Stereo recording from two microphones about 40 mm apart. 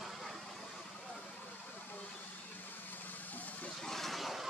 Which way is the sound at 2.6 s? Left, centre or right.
Left.